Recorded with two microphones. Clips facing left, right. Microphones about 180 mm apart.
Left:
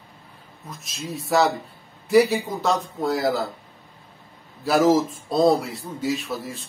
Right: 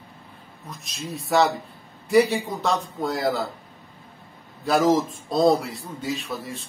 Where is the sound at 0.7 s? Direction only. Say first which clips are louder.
Left 1 dB; centre (ahead or behind).